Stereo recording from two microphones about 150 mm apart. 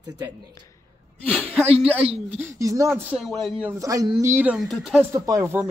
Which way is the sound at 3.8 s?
25° right (ahead or behind).